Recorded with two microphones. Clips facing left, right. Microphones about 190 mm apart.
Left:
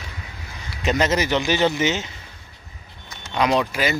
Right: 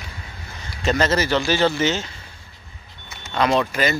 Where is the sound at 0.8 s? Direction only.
15° left (ahead or behind).